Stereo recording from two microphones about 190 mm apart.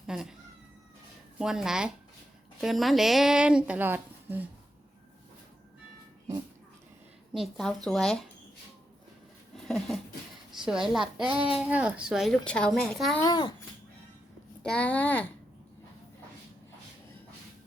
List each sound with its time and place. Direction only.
0.1 s a woman's voice: 5° right (ahead or behind)
1.4 s a woman's voice: 5° right (ahead or behind)
7.3 s a woman's voice: centre (ahead or behind)
9.6 s a sound: centre (ahead or behind)
10.7 s a woman's voice: centre (ahead or behind)
11.0 s a child's voice: 25° right (ahead or behind)
11.3 s a woman's voice: 5° right (ahead or behind)
13.2 s a child's voice: 20° left (ahead or behind)
14.6 s speech: 5° left (ahead or behind)